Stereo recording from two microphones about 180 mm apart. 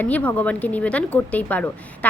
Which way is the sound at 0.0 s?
10° left (ahead or behind).